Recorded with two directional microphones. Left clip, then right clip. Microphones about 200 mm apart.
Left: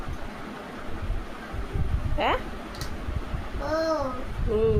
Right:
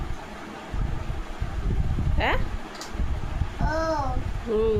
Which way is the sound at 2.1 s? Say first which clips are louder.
Left 1 dB; 20° right (ahead or behind).